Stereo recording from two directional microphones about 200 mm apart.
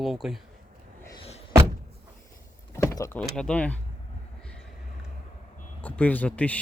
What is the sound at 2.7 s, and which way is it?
Power windows, 15° left (ahead or behind).